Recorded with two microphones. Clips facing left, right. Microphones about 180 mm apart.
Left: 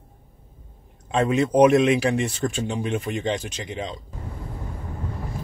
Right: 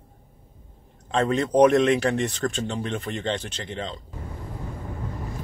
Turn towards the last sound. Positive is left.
turn(degrees=10)  # may be behind; listen again after turning